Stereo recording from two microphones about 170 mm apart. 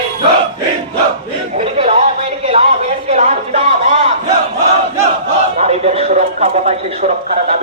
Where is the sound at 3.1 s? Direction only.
40° right (ahead or behind).